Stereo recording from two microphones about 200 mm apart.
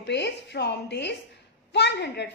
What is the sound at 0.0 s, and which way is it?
A woman's voice, 60° left (ahead or behind).